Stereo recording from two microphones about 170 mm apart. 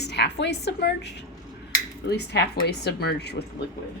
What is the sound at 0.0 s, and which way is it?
Speech, 80° left.